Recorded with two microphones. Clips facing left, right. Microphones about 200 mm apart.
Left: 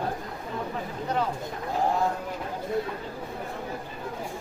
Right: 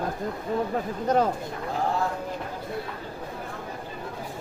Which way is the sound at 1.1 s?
45° right (ahead or behind).